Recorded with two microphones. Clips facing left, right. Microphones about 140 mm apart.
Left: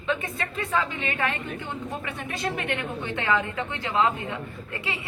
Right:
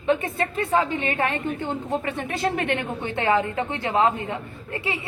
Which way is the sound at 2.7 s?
25° right (ahead or behind).